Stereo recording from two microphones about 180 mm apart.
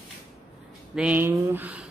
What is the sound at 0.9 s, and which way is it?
Speech, 5° right (ahead or behind).